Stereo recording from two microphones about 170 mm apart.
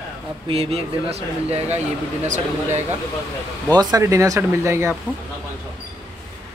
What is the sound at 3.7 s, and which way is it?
Speech, 20° right (ahead or behind).